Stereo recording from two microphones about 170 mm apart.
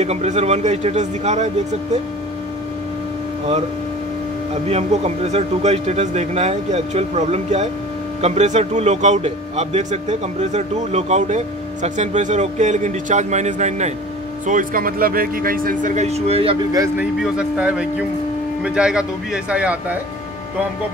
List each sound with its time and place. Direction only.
0.0 s a man's voice: 40° right (ahead or behind)
4.6 s a man's voice: 40° right (ahead or behind)
17.0 s speech: 5° right (ahead or behind)